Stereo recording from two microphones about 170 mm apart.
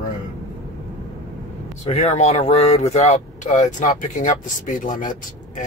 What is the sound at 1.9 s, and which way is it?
Speech, 40° left (ahead or behind).